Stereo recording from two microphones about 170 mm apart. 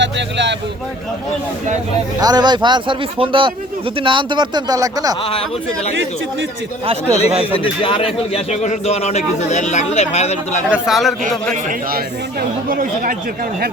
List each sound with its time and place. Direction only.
0.0 s vehicle: 90° right
2.2 s speech: 25° right (ahead or behind)
5.2 s a man's voice: 30° left (ahead or behind)
6.8 s speech: 35° right (ahead or behind)
7.6 s a man's voice: 30° left (ahead or behind)
10.7 s speech: centre (ahead or behind)
11.5 s speech: 55° right (ahead or behind)